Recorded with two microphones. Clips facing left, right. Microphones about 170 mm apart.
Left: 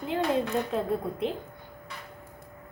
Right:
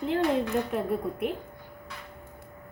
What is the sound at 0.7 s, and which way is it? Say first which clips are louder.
Speech: even; 30° left (ahead or behind).